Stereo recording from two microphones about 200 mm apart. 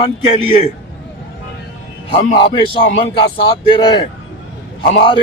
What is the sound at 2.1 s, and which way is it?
A man's voice, 25° left (ahead or behind).